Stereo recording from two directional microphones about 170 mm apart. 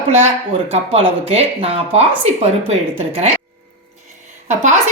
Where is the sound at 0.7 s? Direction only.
35° right (ahead or behind).